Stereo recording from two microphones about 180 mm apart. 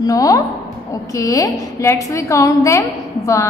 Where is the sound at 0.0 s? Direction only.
20° left (ahead or behind).